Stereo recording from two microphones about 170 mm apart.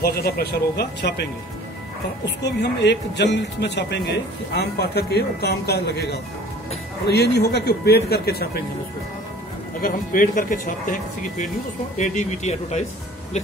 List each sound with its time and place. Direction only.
0.0 s a man's voice: 65° left (ahead or behind)
2.2 s speech: 90° left
4.6 s a man's voice: 70° left (ahead or behind)
9.8 s speech: 55° left (ahead or behind)